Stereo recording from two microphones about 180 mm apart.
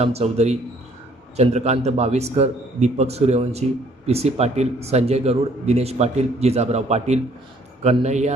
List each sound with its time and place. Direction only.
0.0 s a man's voice: 35° right (ahead or behind)